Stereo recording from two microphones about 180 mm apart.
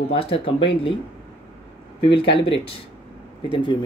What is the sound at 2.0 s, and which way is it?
Speech, 30° left (ahead or behind).